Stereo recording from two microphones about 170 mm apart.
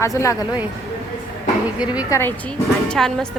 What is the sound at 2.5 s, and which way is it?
Speech, 5° left (ahead or behind).